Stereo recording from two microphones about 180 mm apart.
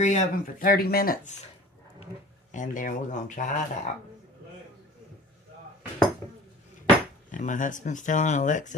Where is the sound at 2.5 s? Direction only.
45° left (ahead or behind).